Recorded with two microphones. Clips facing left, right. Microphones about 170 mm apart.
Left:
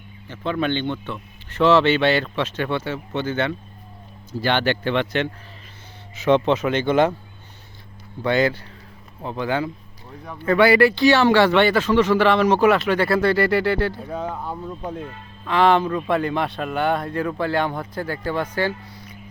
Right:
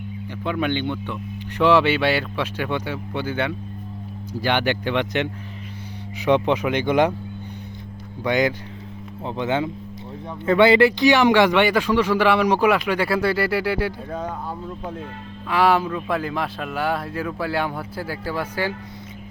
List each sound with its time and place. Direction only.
0.3 s a man's voice: 10° right (ahead or behind)
8.2 s a man's voice: 15° right (ahead or behind)
15.4 s a man's voice: 10° right (ahead or behind)